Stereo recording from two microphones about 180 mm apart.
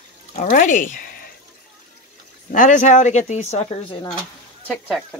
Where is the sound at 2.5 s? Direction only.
45° left (ahead or behind).